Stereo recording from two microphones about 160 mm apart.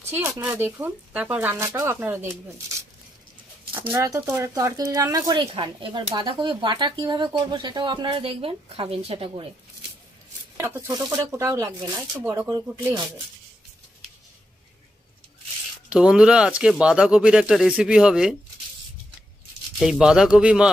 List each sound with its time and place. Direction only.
0.2 s speech: 15° right (ahead or behind)
3.8 s speech: 20° right (ahead or behind); by 9.5 s 35° right (ahead or behind)
10.6 s speech: 20° right (ahead or behind)
15.9 s speech: 5° right (ahead or behind)
19.8 s speech: 5° right (ahead or behind)